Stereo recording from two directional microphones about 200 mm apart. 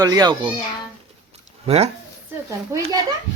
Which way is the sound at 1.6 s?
30° right (ahead or behind).